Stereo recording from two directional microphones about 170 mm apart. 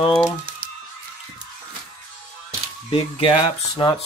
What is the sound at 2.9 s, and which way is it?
Speech, 35° left (ahead or behind).